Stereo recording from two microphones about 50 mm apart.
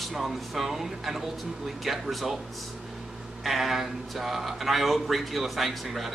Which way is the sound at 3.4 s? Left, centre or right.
Centre.